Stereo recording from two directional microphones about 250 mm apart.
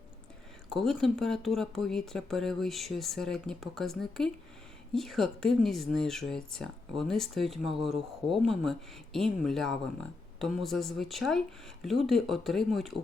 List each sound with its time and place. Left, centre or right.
0.7 s speech: centre